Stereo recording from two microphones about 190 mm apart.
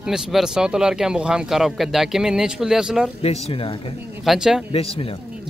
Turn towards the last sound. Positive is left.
turn(degrees=30)  # may be behind; listen again after turning